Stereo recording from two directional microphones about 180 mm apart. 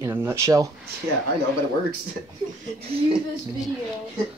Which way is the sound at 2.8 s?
35° right (ahead or behind).